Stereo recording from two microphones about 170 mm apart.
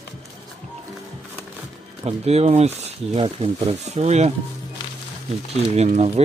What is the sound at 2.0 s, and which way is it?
Speech, 40° right (ahead or behind).